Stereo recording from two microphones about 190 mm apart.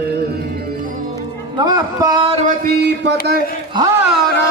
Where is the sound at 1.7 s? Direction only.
20° right (ahead or behind).